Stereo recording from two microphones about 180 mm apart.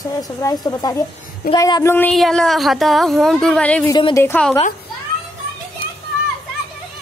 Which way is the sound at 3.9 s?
20° left (ahead or behind).